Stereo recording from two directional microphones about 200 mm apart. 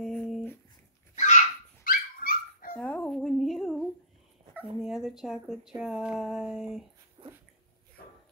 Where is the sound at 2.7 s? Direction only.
5° left (ahead or behind).